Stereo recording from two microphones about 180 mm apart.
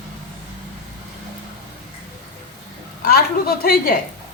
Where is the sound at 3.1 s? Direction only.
60° left (ahead or behind).